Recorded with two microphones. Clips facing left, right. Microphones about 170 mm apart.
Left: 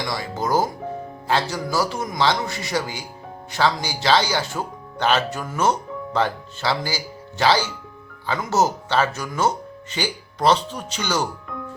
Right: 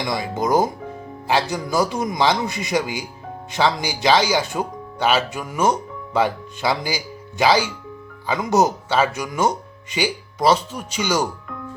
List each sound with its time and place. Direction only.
0.0 s speech: 20° right (ahead or behind)